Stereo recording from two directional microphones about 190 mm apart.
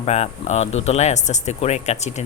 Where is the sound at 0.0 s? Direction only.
35° left (ahead or behind).